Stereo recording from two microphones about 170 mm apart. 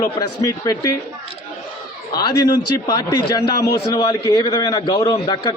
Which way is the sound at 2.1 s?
25° left (ahead or behind).